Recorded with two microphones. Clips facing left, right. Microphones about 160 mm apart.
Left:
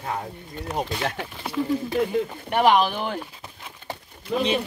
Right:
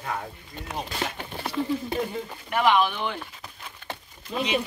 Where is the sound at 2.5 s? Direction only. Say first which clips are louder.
Left 3 dB; 35° left (ahead or behind).